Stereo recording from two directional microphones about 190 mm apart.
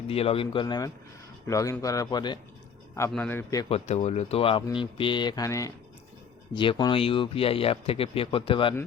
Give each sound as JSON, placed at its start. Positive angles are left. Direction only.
{"t": 0.1, "sound": "a man's voice", "side_deg": 30}
{"t": 3.1, "sound": "a man's voice", "side_deg": 10}
{"t": 3.7, "sound": "speech", "side_deg": 35}